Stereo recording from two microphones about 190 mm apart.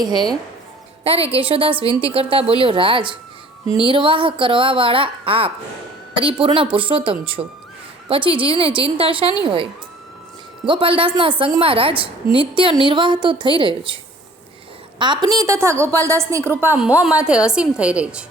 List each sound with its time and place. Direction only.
0.0 s a woman's voice: 20° right (ahead or behind)
1.0 s a woman's voice: 30° right (ahead or behind)
10.7 s a woman's voice: 30° right (ahead or behind); by 18.3 s 5° right (ahead or behind)